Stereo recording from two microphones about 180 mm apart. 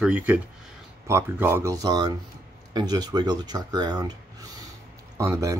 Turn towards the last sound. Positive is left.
turn(degrees=-15)  # may be behind; listen again after turning